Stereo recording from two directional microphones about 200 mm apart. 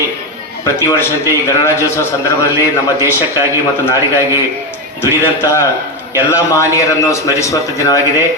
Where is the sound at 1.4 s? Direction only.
15° left (ahead or behind).